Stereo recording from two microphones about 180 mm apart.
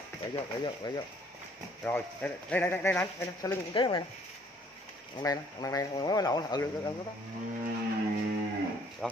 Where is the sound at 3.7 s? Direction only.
30° left (ahead or behind).